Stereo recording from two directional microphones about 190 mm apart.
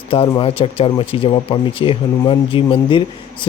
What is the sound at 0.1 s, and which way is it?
Speech, 30° left (ahead or behind).